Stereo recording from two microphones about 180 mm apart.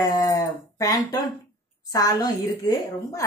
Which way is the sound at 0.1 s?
20° left (ahead or behind).